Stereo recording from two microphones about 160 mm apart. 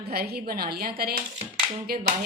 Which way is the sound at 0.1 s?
75° right (ahead or behind).